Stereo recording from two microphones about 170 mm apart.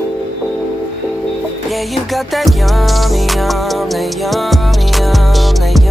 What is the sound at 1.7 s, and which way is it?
Music, centre (ahead or behind).